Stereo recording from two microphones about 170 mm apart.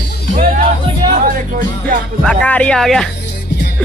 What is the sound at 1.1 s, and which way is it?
Music, 55° right (ahead or behind).